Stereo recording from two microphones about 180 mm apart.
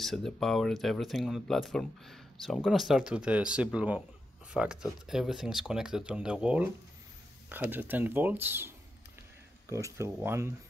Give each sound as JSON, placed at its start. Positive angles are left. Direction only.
{"t": 0.0, "sound": "speech", "side_deg": 0}